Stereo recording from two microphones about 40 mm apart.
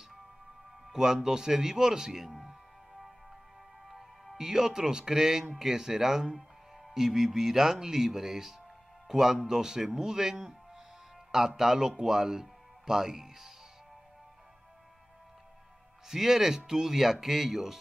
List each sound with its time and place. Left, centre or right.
0.9 s speech: centre
4.4 s speech: centre
16.1 s speech: centre